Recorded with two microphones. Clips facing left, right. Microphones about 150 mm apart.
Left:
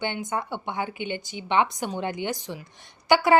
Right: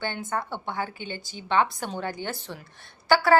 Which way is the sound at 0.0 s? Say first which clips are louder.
Left 1 dB; 15° left (ahead or behind).